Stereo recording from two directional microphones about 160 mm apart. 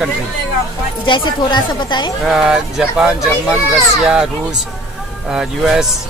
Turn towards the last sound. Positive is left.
turn(degrees=-5)  # may be behind; listen again after turning